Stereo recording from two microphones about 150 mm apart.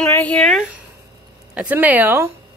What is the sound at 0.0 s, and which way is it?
Speech, 10° left (ahead or behind).